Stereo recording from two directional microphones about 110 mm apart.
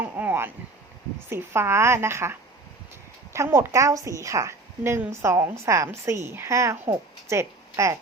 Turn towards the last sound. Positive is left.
turn(degrees=-25)  # may be behind; listen again after turning